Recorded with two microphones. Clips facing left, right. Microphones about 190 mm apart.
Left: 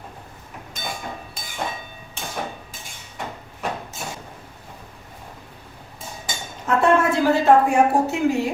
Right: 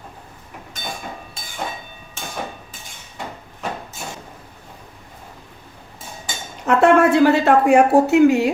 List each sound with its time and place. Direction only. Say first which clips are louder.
6.7 s speech: right 5 dB; 70° right (ahead or behind)